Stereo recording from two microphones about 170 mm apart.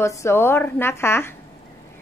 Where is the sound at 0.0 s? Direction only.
15° left (ahead or behind).